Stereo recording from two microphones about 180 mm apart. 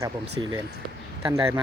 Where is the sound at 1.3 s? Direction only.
15° right (ahead or behind).